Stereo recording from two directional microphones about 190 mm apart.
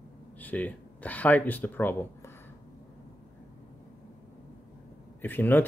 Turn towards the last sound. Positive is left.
turn(degrees=10)  # may be behind; listen again after turning